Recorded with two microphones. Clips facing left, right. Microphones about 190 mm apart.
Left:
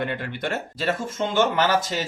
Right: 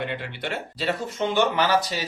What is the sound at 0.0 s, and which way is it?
Speech, 45° left (ahead or behind).